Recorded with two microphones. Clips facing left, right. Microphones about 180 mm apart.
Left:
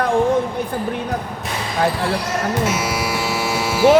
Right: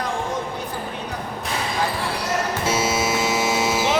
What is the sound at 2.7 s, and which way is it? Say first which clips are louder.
Hum: even; 25° right (ahead or behind).